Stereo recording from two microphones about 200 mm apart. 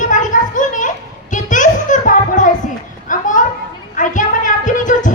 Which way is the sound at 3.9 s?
40° left (ahead or behind).